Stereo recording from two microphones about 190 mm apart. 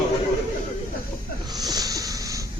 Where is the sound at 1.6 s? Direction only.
20° right (ahead or behind).